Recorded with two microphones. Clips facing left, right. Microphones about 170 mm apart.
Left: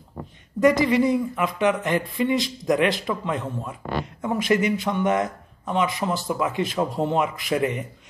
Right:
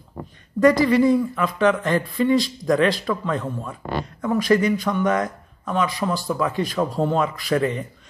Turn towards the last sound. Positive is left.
turn(degrees=15)  # may be behind; listen again after turning